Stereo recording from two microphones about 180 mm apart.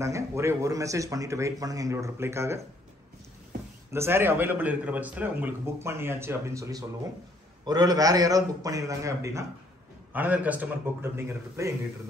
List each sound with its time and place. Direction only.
0.0 s a man's voice: 15° right (ahead or behind)
3.9 s a man's voice: 15° right (ahead or behind)